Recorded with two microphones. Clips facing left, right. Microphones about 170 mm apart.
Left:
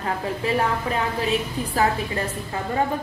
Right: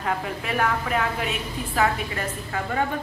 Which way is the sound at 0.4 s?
30° left (ahead or behind).